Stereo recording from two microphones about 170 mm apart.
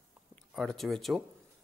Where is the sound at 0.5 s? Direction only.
Centre (ahead or behind).